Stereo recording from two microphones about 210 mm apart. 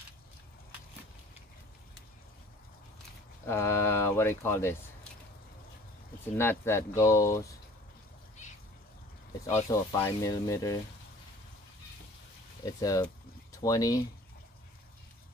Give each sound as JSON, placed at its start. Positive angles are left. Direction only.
{"t": 3.4, "sound": "speech", "side_deg": 10}
{"t": 6.3, "sound": "speech", "side_deg": 10}
{"t": 9.7, "sound": "speech", "side_deg": 15}
{"t": 12.6, "sound": "speech", "side_deg": 15}